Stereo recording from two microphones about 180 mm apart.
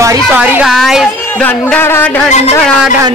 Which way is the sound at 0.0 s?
15° right (ahead or behind).